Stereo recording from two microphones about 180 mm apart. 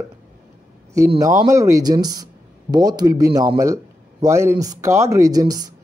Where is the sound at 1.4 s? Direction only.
15° right (ahead or behind).